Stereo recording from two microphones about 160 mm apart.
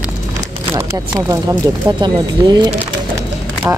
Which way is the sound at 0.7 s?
20° right (ahead or behind).